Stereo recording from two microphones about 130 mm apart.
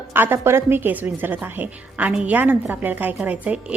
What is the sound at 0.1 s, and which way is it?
A woman's voice, 15° right (ahead or behind).